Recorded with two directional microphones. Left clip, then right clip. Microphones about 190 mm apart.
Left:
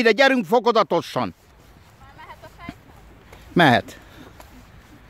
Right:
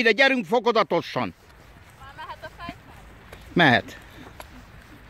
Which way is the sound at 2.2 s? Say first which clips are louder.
Right 4 dB; 5° left (ahead or behind).